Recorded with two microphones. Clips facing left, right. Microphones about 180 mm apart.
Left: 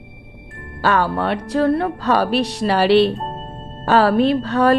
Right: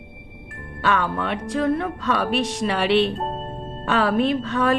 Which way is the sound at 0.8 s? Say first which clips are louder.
Left 4 dB; 40° left (ahead or behind).